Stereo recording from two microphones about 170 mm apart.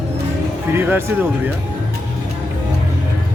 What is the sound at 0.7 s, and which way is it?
Speech, 10° right (ahead or behind).